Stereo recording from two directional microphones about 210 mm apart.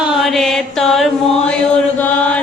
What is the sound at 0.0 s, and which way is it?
Chant, centre (ahead or behind).